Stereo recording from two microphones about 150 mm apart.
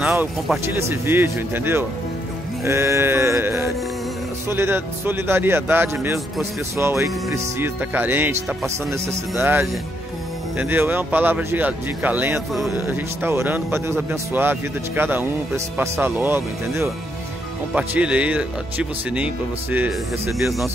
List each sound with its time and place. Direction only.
0.7 s speech: 15° right (ahead or behind)